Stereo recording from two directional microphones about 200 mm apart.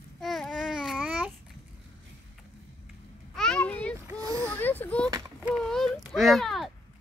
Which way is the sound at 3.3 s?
5° left (ahead or behind).